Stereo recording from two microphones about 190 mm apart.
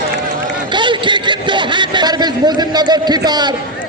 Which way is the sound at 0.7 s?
25° right (ahead or behind).